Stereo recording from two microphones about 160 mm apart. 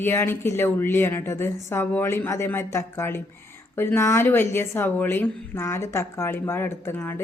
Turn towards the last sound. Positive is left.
turn(degrees=15)  # may be behind; listen again after turning